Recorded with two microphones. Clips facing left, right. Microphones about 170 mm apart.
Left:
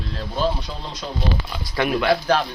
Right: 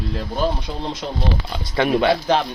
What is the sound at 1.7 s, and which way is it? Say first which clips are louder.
Speech: right 2 dB; 25° right (ahead or behind).